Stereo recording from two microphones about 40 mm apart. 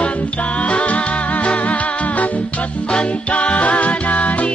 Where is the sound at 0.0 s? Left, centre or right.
Left.